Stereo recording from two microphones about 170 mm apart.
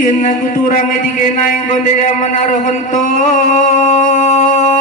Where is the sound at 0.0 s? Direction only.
45° left (ahead or behind).